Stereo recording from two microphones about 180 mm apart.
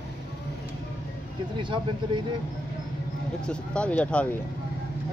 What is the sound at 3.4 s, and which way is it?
Speech, 5° left (ahead or behind).